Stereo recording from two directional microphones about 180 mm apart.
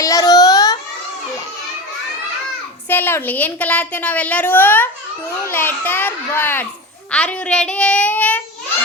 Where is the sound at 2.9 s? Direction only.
10° left (ahead or behind).